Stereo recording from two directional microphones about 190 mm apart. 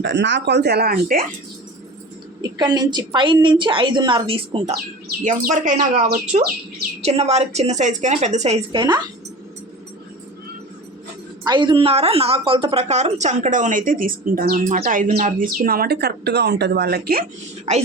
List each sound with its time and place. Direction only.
0.0 s speech: 65° right (ahead or behind); by 1.3 s 50° right (ahead or behind)
2.4 s a woman's voice: 20° right (ahead or behind)
5.2 s a woman's voice: 40° right (ahead or behind)
7.0 s a woman's voice: 35° right (ahead or behind)
11.4 s a woman's voice: 25° right (ahead or behind); by 17.2 s 55° right (ahead or behind)